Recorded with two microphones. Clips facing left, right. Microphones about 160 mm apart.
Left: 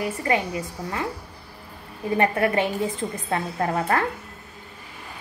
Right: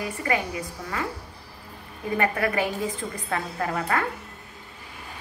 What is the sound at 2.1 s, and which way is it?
A woman's voice, 30° left (ahead or behind).